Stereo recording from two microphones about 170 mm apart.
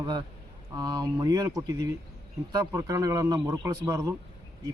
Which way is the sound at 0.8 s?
25° right (ahead or behind).